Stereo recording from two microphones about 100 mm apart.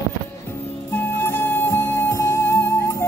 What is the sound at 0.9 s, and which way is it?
Music, 20° left (ahead or behind).